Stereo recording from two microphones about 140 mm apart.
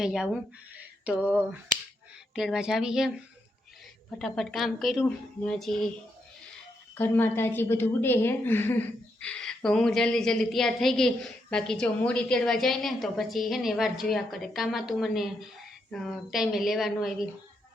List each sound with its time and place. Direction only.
0.0 s a woman's voice: 5° right (ahead or behind)
4.2 s a woman's voice: centre (ahead or behind)
6.9 s a woman's voice: 15° left (ahead or behind); by 17.2 s centre (ahead or behind)